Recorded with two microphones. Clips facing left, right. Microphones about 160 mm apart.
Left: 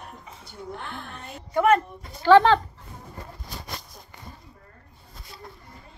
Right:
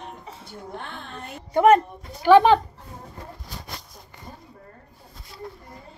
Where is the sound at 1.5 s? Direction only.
20° right (ahead or behind).